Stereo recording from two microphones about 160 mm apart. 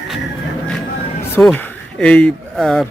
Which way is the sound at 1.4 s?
10° left (ahead or behind).